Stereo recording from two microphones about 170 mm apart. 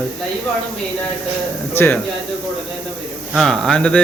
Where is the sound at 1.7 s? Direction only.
10° left (ahead or behind).